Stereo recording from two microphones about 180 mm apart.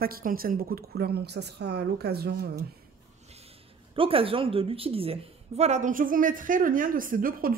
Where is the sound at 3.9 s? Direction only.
30° right (ahead or behind); by 7.6 s 55° right (ahead or behind).